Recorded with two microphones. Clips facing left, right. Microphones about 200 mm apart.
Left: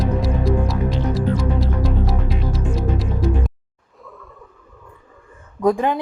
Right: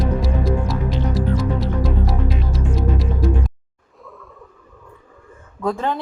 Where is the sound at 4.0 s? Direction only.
Centre (ahead or behind).